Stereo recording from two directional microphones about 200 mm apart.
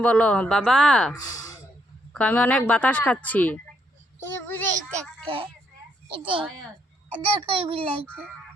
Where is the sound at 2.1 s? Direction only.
5° left (ahead or behind).